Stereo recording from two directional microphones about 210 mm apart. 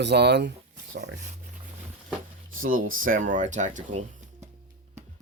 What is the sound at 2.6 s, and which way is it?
Speech, 40° right (ahead or behind).